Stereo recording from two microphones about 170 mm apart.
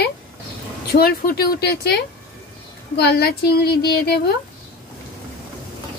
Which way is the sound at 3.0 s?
75° left (ahead or behind).